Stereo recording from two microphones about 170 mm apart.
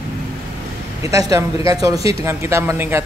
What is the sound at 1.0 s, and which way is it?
A man's voice, 20° right (ahead or behind).